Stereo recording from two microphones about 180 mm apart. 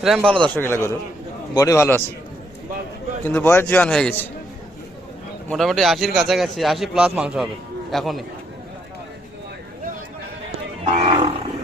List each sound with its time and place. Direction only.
0.0 s a man's voice: centre (ahead or behind)
0.5 s a man's voice: 10° left (ahead or behind)
3.2 s a man's voice: 10° left (ahead or behind)
5.5 s a man's voice: centre (ahead or behind)
10.9 s roaring cats: 35° right (ahead or behind)